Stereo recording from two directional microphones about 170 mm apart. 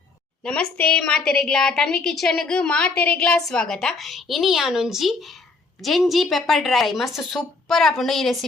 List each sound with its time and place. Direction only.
0.4 s a woman's voice: 5° left (ahead or behind)